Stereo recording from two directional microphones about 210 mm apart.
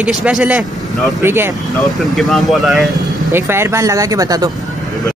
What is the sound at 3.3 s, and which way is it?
Speech, 10° right (ahead or behind).